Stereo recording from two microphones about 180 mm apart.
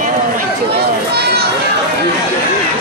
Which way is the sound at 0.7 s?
65° right (ahead or behind).